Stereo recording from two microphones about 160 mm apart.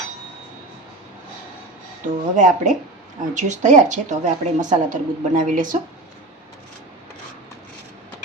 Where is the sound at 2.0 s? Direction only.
55° right (ahead or behind).